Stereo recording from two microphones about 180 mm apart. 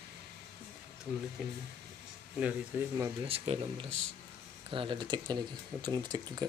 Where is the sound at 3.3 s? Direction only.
30° right (ahead or behind).